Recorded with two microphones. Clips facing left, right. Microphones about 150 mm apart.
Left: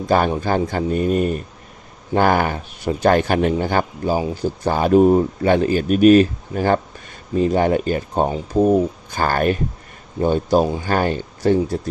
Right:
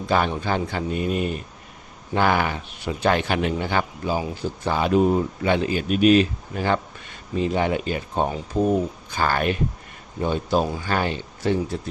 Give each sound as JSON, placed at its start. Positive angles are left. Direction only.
{"t": 0.1, "sound": "speech", "side_deg": 45}